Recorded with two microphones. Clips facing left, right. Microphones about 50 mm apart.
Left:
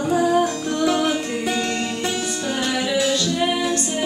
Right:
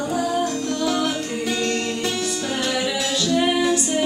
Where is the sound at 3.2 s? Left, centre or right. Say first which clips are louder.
Right 2 dB; centre.